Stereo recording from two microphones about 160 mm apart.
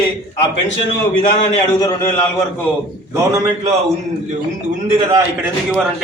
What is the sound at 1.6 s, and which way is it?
Speech, 25° left (ahead or behind).